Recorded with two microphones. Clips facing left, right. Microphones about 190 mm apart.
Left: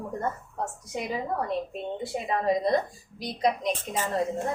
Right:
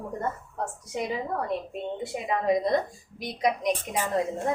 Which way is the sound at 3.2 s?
15° right (ahead or behind).